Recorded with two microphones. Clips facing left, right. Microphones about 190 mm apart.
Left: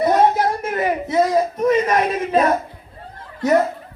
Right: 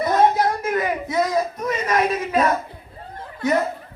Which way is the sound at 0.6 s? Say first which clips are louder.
Left 2 dB; 25° left (ahead or behind).